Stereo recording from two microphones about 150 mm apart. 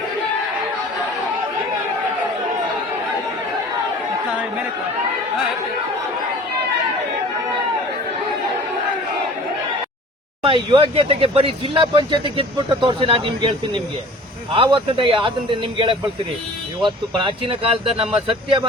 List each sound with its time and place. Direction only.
10.4 s speech: 35° right (ahead or behind)
14.5 s speech: 35° right (ahead or behind)